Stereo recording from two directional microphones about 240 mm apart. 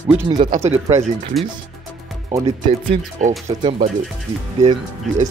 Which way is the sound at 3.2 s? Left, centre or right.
Right.